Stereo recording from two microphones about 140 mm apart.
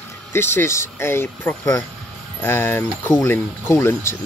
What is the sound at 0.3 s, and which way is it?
Speech, 15° left (ahead or behind).